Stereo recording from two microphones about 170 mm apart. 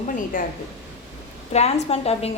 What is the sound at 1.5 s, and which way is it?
Speech, 40° left (ahead or behind).